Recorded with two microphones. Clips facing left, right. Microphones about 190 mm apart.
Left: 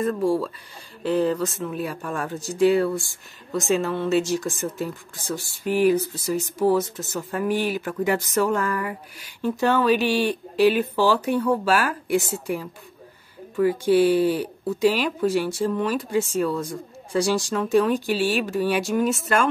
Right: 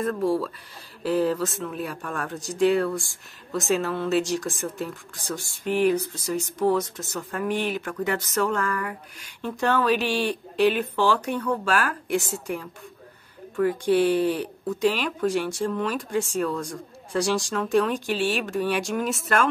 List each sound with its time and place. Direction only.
0.0 s speech: centre (ahead or behind)